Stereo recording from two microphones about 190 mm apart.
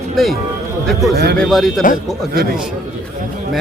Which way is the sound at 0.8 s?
Centre (ahead or behind).